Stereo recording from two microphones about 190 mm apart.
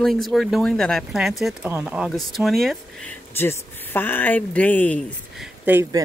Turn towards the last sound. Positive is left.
turn(degrees=-10)  # may be behind; listen again after turning